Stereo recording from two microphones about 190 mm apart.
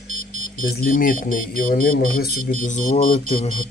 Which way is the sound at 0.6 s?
45° left (ahead or behind).